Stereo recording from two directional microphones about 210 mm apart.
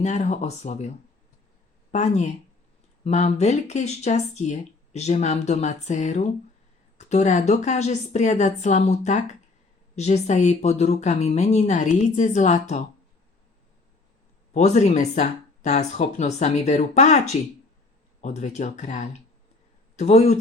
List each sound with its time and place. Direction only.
0.0 s speech: 35° left (ahead or behind)
14.5 s speech: 35° left (ahead or behind)